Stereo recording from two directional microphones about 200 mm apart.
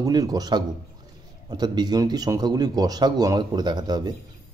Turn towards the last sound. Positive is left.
turn(degrees=-20)  # may be behind; listen again after turning